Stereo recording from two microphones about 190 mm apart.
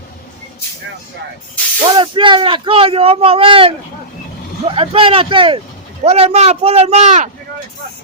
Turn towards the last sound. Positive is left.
turn(degrees=-40)  # may be behind; listen again after turning